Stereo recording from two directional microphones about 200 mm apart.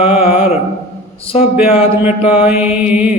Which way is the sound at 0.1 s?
5° right (ahead or behind).